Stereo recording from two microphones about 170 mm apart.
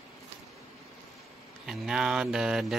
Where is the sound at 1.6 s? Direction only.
5° right (ahead or behind).